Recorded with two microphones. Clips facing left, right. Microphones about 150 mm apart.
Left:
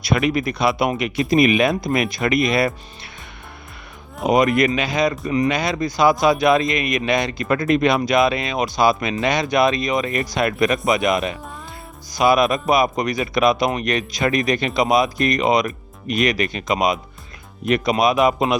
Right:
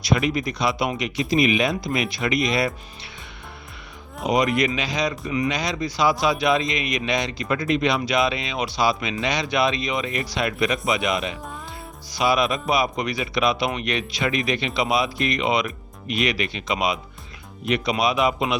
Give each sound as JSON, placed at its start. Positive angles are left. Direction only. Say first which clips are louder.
{"t": 0.0, "sound": "speech", "louder": "left 3 dB", "side_deg": 60}
{"t": 4.3, "sound": "speech", "louder": "left 4 dB", "side_deg": 50}